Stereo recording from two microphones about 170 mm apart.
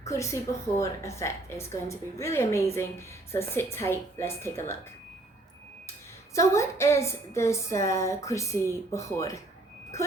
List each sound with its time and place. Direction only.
0.0 s a woman's voice: 15° left (ahead or behind)
6.3 s a woman's voice: 15° left (ahead or behind)